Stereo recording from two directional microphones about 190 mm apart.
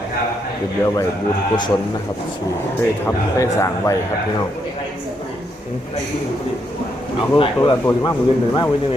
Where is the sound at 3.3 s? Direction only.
15° left (ahead or behind).